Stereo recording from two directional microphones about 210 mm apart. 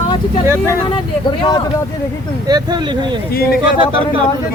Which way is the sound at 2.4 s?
20° right (ahead or behind).